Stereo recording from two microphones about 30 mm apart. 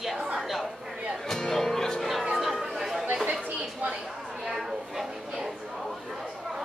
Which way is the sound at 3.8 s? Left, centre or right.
Right.